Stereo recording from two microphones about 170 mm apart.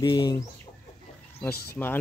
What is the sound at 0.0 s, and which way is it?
Speech, 25° left (ahead or behind).